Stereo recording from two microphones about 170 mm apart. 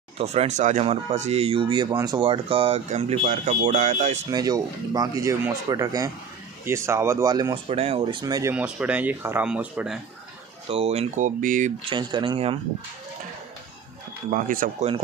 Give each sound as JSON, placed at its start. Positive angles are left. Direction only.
{"t": 0.2, "sound": "speech", "side_deg": -40}
{"t": 4.3, "sound": "speech", "side_deg": -20}
{"t": 7.7, "sound": "speech", "side_deg": -35}
{"t": 8.5, "sound": "speech", "side_deg": -5}
{"t": 10.7, "sound": "speech", "side_deg": -35}
{"t": 11.9, "sound": "speech", "side_deg": -30}
{"t": 14.3, "sound": "speech", "side_deg": -55}